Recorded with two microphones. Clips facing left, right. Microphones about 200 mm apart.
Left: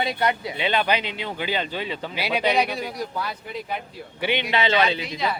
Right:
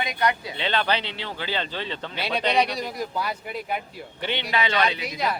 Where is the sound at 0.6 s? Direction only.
10° left (ahead or behind).